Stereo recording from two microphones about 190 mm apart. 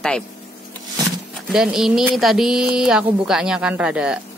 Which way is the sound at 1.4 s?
5° right (ahead or behind).